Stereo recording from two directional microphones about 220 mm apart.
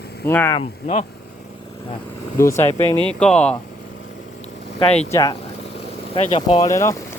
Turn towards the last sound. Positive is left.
turn(degrees=15)  # may be behind; listen again after turning